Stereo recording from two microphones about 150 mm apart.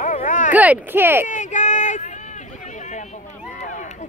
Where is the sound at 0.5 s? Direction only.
10° right (ahead or behind).